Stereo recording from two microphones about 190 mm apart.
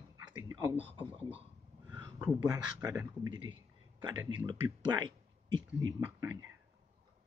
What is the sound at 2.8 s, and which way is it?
A man's voice, 15° right (ahead or behind).